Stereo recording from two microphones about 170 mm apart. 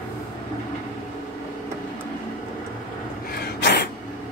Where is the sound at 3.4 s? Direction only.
80° left.